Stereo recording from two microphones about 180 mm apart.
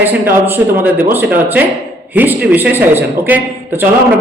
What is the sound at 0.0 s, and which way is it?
A man's voice, 10° right (ahead or behind).